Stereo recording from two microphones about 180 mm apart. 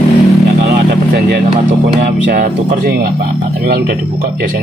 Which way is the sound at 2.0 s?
50° right (ahead or behind).